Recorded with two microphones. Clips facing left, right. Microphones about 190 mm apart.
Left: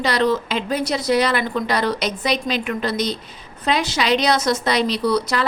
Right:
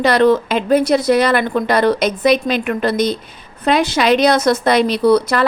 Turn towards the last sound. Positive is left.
turn(degrees=-55)  # may be behind; listen again after turning